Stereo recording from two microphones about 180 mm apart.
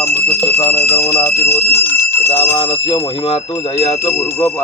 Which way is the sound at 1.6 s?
60° left (ahead or behind).